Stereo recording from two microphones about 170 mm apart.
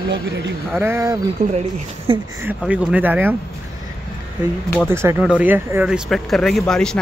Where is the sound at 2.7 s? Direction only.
10° right (ahead or behind).